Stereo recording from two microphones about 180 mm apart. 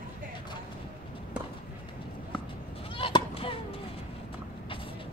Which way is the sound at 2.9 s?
30° left (ahead or behind).